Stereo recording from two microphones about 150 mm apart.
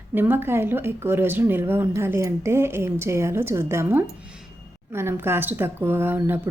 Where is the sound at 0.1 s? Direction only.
15° right (ahead or behind).